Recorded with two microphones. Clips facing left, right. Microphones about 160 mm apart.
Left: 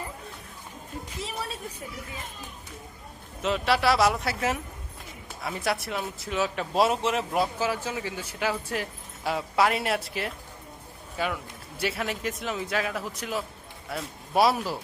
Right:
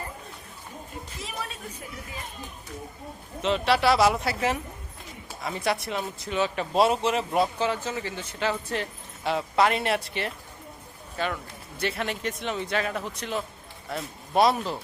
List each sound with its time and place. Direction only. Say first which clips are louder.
3.4 s speech: right 1 dB; centre (ahead or behind)